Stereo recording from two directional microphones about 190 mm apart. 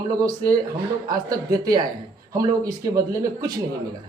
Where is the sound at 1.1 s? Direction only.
20° right (ahead or behind).